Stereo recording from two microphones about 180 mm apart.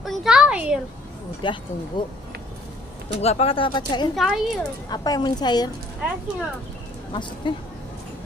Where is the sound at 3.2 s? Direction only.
35° left (ahead or behind).